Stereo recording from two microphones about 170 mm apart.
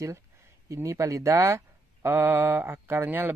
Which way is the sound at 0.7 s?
15° right (ahead or behind).